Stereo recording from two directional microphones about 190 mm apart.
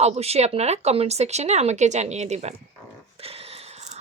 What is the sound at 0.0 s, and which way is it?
Speech, 35° right (ahead or behind).